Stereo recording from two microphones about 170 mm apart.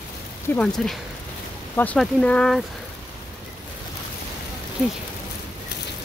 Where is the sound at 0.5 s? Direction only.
5° left (ahead or behind).